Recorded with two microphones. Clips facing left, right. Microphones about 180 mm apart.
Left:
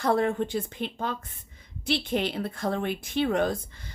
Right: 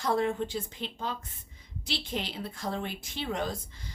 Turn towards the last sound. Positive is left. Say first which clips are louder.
# left 7 dB
turn(degrees=55)  # may be behind; listen again after turning